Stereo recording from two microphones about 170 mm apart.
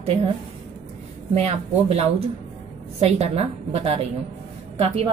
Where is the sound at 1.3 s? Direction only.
35° right (ahead or behind).